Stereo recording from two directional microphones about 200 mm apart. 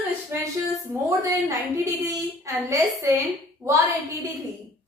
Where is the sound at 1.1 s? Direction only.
15° right (ahead or behind).